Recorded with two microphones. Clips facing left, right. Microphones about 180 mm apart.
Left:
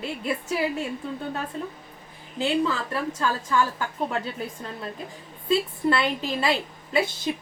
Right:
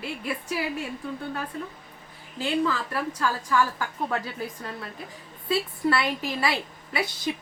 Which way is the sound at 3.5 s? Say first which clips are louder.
Even; 25° left (ahead or behind).